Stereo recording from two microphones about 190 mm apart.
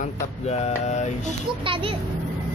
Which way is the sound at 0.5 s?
35° left (ahead or behind).